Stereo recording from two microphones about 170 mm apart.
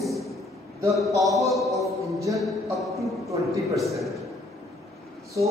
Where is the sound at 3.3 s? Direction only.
20° right (ahead or behind).